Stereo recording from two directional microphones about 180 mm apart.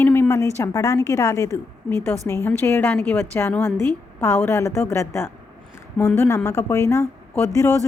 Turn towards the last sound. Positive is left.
turn(degrees=15)  # may be behind; listen again after turning